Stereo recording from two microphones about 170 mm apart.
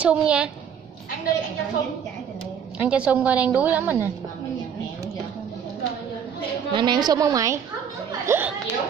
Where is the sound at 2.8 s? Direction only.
5° right (ahead or behind).